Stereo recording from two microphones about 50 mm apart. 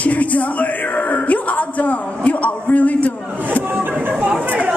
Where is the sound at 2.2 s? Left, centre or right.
Left.